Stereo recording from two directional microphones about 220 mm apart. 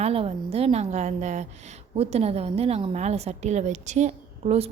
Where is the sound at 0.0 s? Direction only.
25° right (ahead or behind).